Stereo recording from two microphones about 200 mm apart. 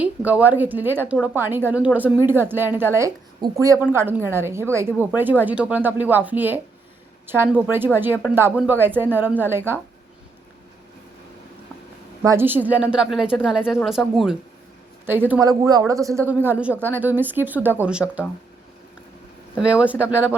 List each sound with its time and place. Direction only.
0.0 s a woman's voice: 5° right (ahead or behind)
12.2 s a woman's voice: 15° right (ahead or behind)
19.5 s a woman's voice: 5° right (ahead or behind)